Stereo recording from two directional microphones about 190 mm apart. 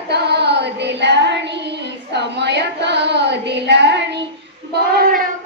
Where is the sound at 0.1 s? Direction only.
60° right (ahead or behind).